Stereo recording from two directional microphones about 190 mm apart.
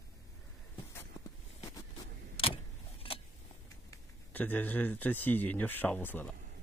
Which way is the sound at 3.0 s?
30° left (ahead or behind).